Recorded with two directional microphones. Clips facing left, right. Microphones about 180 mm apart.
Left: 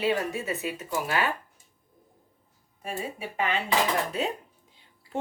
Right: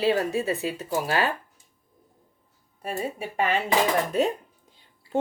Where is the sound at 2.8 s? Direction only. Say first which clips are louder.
Right 4 dB; 40° right (ahead or behind).